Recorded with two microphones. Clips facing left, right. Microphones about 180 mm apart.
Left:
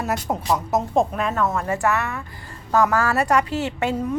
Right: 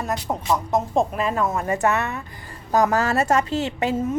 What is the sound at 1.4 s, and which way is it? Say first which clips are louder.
A woman's voice: even; 20° right (ahead or behind).